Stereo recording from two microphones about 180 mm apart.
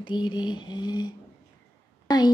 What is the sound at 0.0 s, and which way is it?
Speech, 25° left (ahead or behind).